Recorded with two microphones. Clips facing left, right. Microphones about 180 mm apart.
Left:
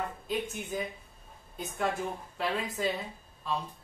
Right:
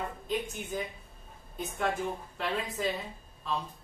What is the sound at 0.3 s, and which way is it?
Speech, centre (ahead or behind).